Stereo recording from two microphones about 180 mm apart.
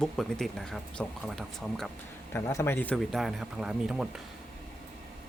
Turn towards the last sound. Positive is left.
turn(degrees=-5)  # may be behind; listen again after turning